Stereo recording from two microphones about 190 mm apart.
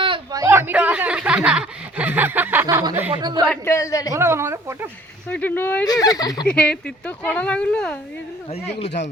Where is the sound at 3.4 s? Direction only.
10° left (ahead or behind).